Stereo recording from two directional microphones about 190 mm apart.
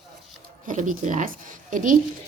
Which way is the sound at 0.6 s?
45° right (ahead or behind).